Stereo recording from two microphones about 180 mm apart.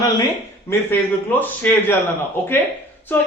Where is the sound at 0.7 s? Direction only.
10° left (ahead or behind).